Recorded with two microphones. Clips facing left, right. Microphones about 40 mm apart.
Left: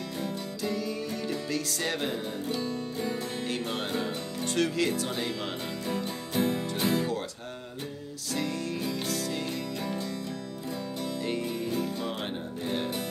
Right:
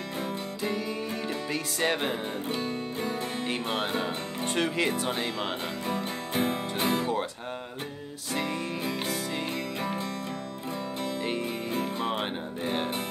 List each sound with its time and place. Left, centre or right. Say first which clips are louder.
0.2 s music: right 1 dB; right
8.3 s music: right 1 dB; right
11.2 s music: even; right